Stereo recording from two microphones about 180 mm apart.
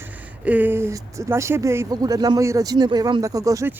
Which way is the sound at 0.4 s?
10° right (ahead or behind).